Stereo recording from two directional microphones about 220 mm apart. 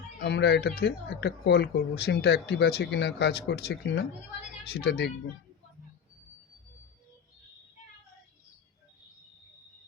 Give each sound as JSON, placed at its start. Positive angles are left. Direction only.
{"t": 0.2, "sound": "speech", "side_deg": 50}